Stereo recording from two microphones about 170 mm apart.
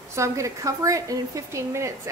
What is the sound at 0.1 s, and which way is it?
Speech, 15° right (ahead or behind).